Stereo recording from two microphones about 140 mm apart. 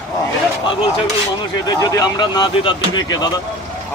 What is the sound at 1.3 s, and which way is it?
Speech, 25° left (ahead or behind).